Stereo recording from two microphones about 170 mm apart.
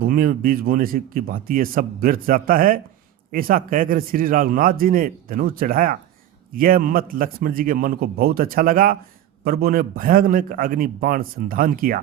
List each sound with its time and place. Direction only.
0.0 s speech: 60° right (ahead or behind)